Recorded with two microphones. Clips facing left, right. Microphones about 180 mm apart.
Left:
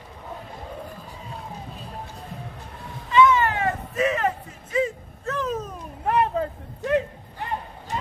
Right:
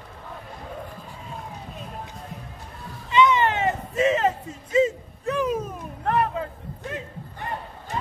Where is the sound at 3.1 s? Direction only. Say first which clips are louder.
Left 1 dB; 20° right (ahead or behind).